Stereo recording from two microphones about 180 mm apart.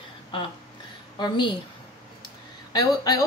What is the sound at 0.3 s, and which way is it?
Speech, 30° left (ahead or behind).